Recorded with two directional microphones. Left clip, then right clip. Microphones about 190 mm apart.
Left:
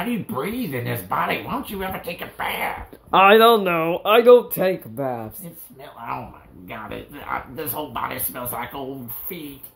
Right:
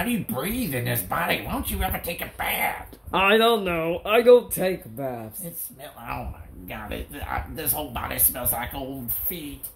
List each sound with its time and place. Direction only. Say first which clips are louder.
0.3 s speech: left 2 dB; 5° right (ahead or behind)
3.1 s speech: left 6 dB; 25° left (ahead or behind)
6.7 s speech: left 1 dB; 10° right (ahead or behind)